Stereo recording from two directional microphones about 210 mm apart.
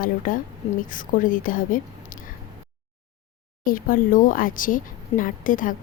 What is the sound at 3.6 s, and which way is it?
Speech, 40° left (ahead or behind).